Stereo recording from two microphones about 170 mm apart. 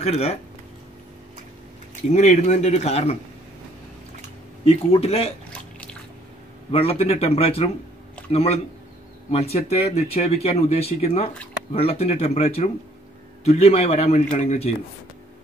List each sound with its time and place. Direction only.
0.0 s speech: 40° left (ahead or behind)
2.1 s speech: 45° left (ahead or behind)
4.6 s speech: 35° left (ahead or behind)
5.5 s a sound: 5° left (ahead or behind)
6.7 s speech: 35° left (ahead or behind)